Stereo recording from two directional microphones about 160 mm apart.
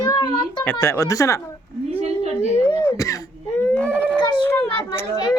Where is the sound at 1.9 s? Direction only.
40° right (ahead or behind).